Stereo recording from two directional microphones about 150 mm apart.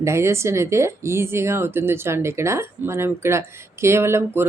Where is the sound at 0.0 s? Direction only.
20° right (ahead or behind).